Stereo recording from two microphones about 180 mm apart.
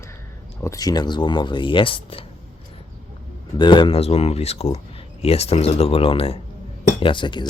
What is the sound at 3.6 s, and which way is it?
Speech, 25° left (ahead or behind).